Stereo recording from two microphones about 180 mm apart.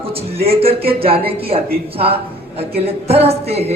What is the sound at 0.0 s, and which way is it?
Speech, 30° right (ahead or behind).